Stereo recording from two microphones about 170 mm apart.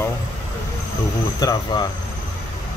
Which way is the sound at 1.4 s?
25° left (ahead or behind).